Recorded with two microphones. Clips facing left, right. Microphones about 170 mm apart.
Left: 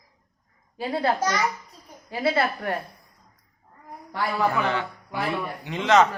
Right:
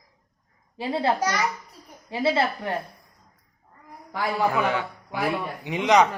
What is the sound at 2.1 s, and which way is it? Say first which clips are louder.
Speech: right 1 dB; 25° right (ahead or behind).